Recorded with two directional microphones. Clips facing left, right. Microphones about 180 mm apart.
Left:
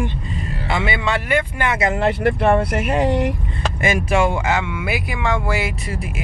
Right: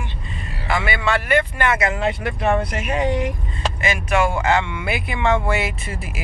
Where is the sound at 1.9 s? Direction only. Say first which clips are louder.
Left 5 dB; 60° left (ahead or behind).